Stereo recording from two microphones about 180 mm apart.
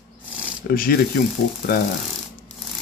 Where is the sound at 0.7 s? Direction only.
55° left (ahead or behind).